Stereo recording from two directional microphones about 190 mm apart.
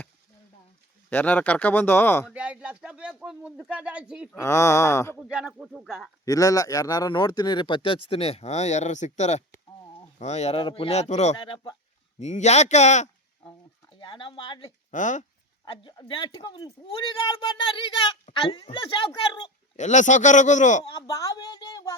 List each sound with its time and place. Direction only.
1.1 s speech: 10° left (ahead or behind)
2.3 s speech: 5° right (ahead or behind)
4.3 s speech: 15° left (ahead or behind)
5.3 s speech: 5° right (ahead or behind)
6.2 s speech: 20° left (ahead or behind)
12.2 s speech: 35° left (ahead or behind)
14.0 s speech: 25° left (ahead or behind)
14.8 s speech: 40° left (ahead or behind)
15.6 s speech: 25° left (ahead or behind)
19.7 s speech: 40° left (ahead or behind)
21.1 s speech: 15° left (ahead or behind)